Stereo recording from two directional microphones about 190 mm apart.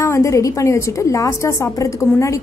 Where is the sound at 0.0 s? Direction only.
15° left (ahead or behind).